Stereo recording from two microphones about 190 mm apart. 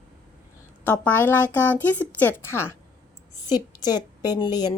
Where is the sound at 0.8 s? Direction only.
10° left (ahead or behind).